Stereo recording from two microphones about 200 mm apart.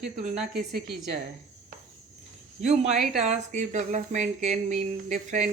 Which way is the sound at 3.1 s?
35° right (ahead or behind).